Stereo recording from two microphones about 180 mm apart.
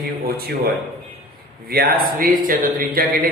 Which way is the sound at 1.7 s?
55° right (ahead or behind).